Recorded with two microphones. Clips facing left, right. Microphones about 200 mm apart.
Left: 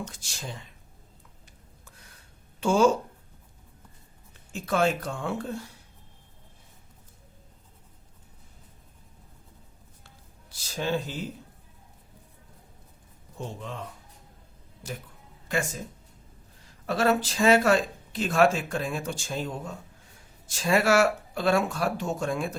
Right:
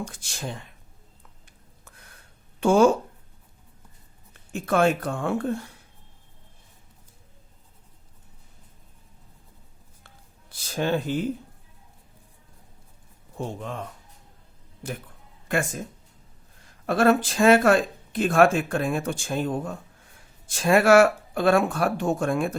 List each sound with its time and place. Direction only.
0.1 s speech: 55° right (ahead or behind)
1.8 s a sound: 55° right (ahead or behind)
2.6 s speech: 55° right (ahead or behind)
4.5 s speech: 55° right (ahead or behind)
10.5 s speech: 55° right (ahead or behind)
13.4 s speech: 55° right (ahead or behind)
14.8 s speech: 55° right (ahead or behind)
16.8 s speech: 55° right (ahead or behind)